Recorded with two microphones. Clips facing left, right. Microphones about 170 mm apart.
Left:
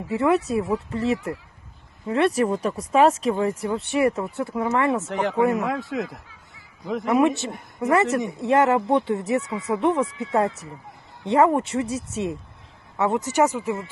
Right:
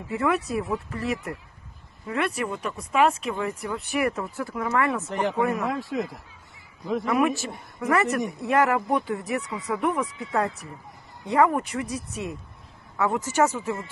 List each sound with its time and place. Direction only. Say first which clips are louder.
0.1 s speech: left 4 dB; 25° left (ahead or behind)
7.0 s speech: left 4 dB; 25° left (ahead or behind)